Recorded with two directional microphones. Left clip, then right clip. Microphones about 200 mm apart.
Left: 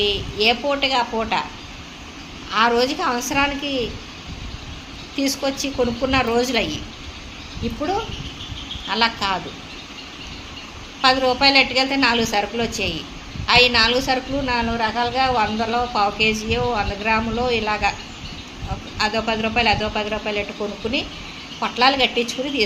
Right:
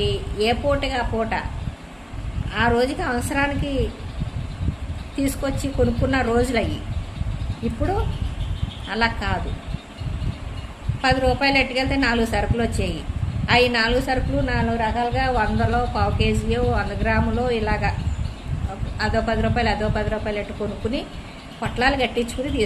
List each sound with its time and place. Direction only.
0.0 s a woman's voice: 15° right (ahead or behind)
2.5 s a woman's voice: 15° right (ahead or behind)
5.1 s a woman's voice: 20° right (ahead or behind)
8.9 s a woman's voice: 20° right (ahead or behind)
11.0 s a woman's voice: 20° right (ahead or behind)
18.9 s a woman's voice: 15° right (ahead or behind)
21.6 s a woman's voice: 15° right (ahead or behind)